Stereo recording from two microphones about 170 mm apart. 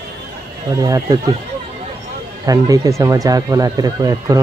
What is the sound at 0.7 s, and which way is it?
Speech, 20° right (ahead or behind).